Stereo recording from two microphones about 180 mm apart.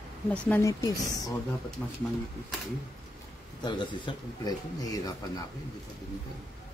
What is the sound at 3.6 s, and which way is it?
Speech, 25° left (ahead or behind).